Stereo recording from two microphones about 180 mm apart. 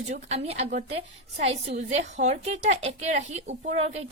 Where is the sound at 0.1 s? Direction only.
35° right (ahead or behind).